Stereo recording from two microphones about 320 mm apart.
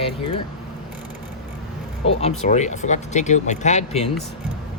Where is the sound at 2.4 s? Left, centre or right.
Left.